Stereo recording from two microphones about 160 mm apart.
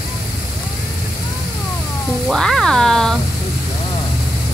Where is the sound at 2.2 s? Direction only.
Centre (ahead or behind).